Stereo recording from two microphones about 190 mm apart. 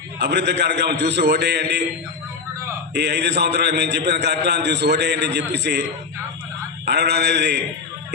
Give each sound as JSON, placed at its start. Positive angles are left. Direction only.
{"t": 0.2, "sound": "a man's voice", "side_deg": -60}
{"t": 2.9, "sound": "a man's voice", "side_deg": -60}
{"t": 6.8, "sound": "a man's voice", "side_deg": -60}